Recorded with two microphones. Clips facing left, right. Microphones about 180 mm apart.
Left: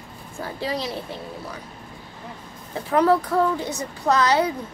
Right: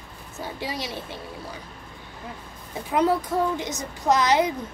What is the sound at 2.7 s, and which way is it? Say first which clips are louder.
A woman's voice: left 3 dB; 15° right (ahead or behind).